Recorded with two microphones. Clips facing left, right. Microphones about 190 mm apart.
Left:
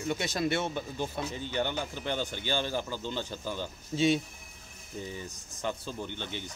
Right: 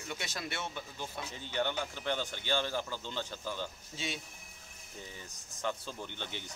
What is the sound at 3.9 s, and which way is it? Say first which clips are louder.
Speech: left 18 dB; 25° left (ahead or behind).